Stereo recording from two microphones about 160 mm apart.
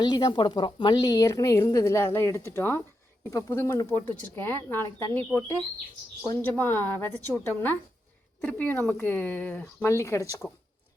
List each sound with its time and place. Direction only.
0.0 s a woman's voice: 25° left (ahead or behind)